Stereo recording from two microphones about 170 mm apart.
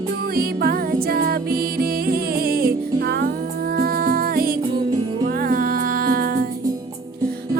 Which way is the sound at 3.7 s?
60° right (ahead or behind).